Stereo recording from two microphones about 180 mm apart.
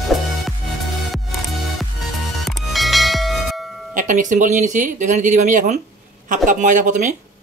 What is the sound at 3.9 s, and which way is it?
Speech, 45° right (ahead or behind).